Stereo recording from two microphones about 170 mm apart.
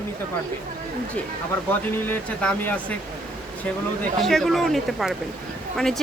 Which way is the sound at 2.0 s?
10° left (ahead or behind).